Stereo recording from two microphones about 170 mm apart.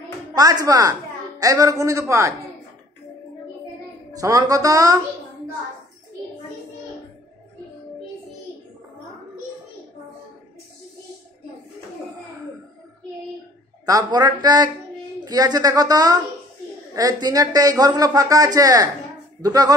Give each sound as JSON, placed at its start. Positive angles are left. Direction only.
{"t": 0.4, "sound": "a man's voice", "side_deg": -20}
{"t": 4.1, "sound": "a man's voice", "side_deg": -20}
{"t": 13.8, "sound": "a man's voice", "side_deg": -20}